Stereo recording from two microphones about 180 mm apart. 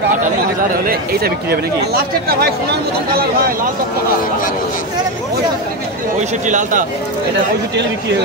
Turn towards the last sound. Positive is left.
turn(degrees=-45)  # may be behind; listen again after turning